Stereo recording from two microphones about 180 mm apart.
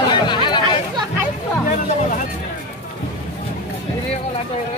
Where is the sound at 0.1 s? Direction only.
25° left (ahead or behind).